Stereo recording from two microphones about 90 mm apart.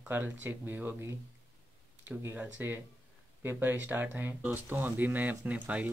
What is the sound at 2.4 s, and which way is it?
Speech, 20° right (ahead or behind).